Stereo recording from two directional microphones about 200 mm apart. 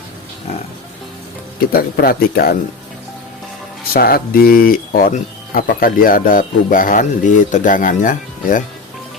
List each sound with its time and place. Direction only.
1.7 s speech: 50° left (ahead or behind)
3.9 s speech: 45° left (ahead or behind)